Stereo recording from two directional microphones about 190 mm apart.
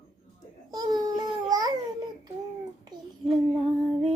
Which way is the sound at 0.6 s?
20° right (ahead or behind).